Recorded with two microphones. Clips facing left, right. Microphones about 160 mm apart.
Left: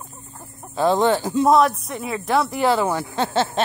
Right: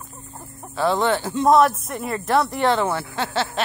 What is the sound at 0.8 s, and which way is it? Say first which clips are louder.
Speech: left 2 dB; 15° left (ahead or behind).